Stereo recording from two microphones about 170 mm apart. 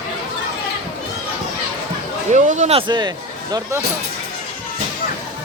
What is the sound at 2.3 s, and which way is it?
Speech, 45° right (ahead or behind).